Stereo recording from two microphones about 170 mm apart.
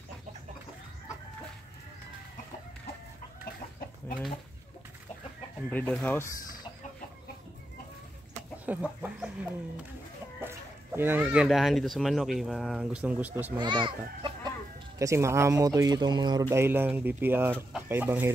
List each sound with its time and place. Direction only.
5.7 s speech: 10° left (ahead or behind)
8.6 s speech: 10° right (ahead or behind)
13.6 s a child's voice: 25° right (ahead or behind)
15.0 s speech: 15° right (ahead or behind)